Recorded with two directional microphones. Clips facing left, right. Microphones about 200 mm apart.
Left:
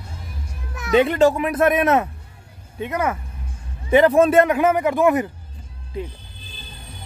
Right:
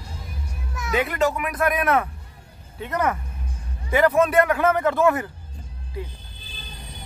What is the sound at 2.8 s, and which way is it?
Speech, 10° left (ahead or behind).